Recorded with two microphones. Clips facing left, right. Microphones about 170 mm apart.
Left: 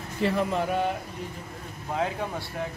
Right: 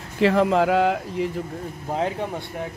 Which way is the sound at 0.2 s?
90° right.